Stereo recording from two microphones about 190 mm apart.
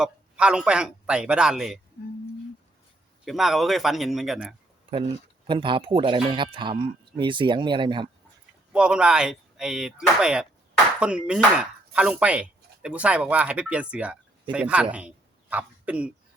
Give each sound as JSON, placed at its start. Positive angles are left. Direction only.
{"t": 0.0, "sound": "speech", "side_deg": -5}
{"t": 3.2, "sound": "speech", "side_deg": 0}
{"t": 5.5, "sound": "speech", "side_deg": -25}
{"t": 8.7, "sound": "a man's voice", "side_deg": -5}